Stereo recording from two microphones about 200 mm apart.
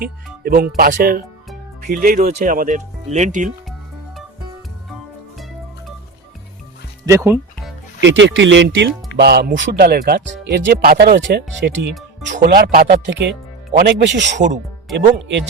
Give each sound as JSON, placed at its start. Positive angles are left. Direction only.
{"t": 0.4, "sound": "speech", "side_deg": -45}
{"t": 7.0, "sound": "speech", "side_deg": -15}
{"t": 8.0, "sound": "speech", "side_deg": -65}
{"t": 11.4, "sound": "speech", "side_deg": 0}
{"t": 12.4, "sound": "speech", "side_deg": -50}